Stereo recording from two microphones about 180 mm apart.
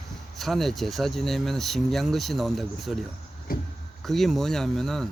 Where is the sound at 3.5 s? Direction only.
55° left (ahead or behind).